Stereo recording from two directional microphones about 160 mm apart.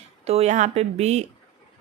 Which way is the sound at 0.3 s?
40° right (ahead or behind).